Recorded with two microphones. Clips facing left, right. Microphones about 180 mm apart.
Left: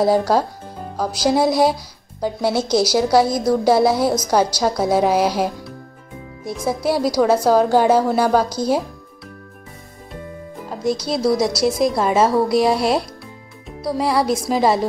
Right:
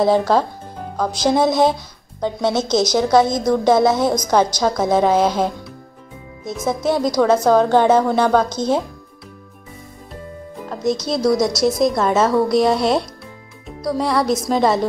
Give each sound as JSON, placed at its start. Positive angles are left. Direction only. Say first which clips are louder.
{"t": 0.0, "sound": "a woman's voice", "louder": "right 1 dB", "side_deg": 10}
{"t": 10.7, "sound": "music", "louder": "right 1 dB", "side_deg": 5}
{"t": 11.8, "sound": "a woman's voice", "louder": "right 1 dB", "side_deg": 5}
{"t": 12.2, "sound": "a woman's voice", "louder": "left 1 dB", "side_deg": 30}
{"t": 12.4, "sound": "a woman's voice", "louder": "right 1 dB", "side_deg": 5}